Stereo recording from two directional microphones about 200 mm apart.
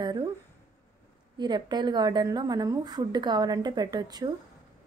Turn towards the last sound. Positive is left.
turn(degrees=-20)  # may be behind; listen again after turning